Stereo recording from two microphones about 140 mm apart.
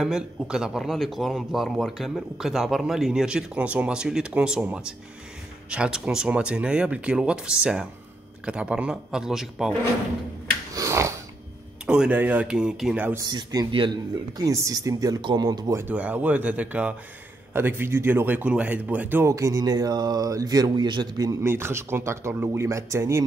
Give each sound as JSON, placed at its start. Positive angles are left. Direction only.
{"t": 0.0, "sound": "speech", "side_deg": -5}
{"t": 10.7, "sound": "a sound", "side_deg": -20}
{"t": 11.8, "sound": "speech", "side_deg": -5}
{"t": 13.3, "sound": "speech", "side_deg": -30}
{"t": 15.8, "sound": "speech", "side_deg": -10}